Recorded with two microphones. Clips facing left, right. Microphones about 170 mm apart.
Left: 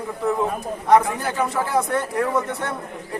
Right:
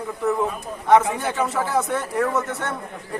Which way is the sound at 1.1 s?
Centre (ahead or behind).